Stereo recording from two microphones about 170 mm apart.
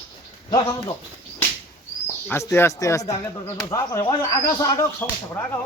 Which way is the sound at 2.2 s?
15° left (ahead or behind).